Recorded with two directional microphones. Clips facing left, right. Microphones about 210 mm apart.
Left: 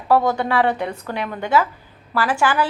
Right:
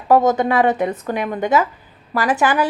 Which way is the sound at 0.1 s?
20° right (ahead or behind).